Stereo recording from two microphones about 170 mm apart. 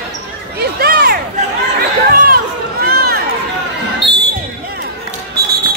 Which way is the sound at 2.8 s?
65° right (ahead or behind).